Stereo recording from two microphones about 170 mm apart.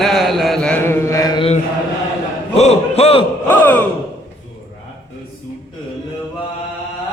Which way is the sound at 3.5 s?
10° left (ahead or behind).